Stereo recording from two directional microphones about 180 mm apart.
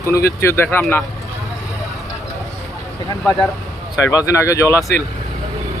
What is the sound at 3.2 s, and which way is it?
Speech, centre (ahead or behind).